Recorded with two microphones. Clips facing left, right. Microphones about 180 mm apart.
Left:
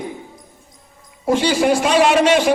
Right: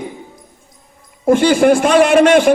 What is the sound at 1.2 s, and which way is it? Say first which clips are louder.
A man's voice: right 5 dB; 55° right (ahead or behind).